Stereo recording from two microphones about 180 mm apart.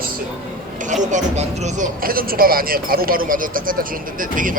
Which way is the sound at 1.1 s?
40° right (ahead or behind).